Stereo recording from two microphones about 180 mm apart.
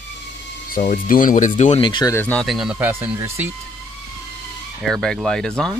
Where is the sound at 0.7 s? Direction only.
50° left (ahead or behind); by 2.1 s 25° left (ahead or behind).